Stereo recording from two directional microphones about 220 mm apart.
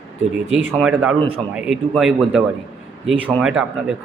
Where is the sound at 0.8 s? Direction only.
5° right (ahead or behind).